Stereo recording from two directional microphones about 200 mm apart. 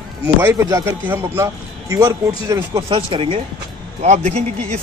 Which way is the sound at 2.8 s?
25° right (ahead or behind).